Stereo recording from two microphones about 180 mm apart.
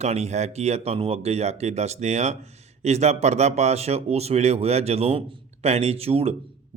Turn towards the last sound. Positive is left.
turn(degrees=-35)  # may be behind; listen again after turning